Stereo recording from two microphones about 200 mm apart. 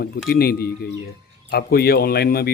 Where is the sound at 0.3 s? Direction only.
50° left (ahead or behind).